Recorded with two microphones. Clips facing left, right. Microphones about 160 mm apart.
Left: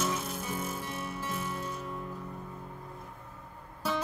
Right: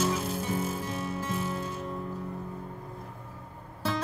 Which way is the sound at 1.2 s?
Centre (ahead or behind).